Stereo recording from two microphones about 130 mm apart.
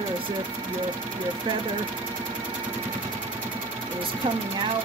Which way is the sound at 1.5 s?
40° right (ahead or behind).